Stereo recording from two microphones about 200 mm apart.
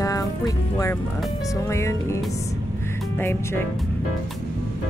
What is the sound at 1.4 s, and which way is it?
Speech, 15° left (ahead or behind).